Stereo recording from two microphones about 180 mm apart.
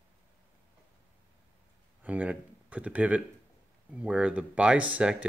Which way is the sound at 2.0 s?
10° right (ahead or behind).